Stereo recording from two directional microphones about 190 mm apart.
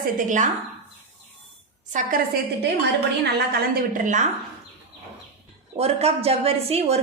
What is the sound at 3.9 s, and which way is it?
Speech, 40° right (ahead or behind).